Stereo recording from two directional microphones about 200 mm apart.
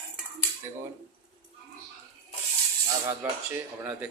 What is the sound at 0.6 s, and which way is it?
Speech, 15° right (ahead or behind).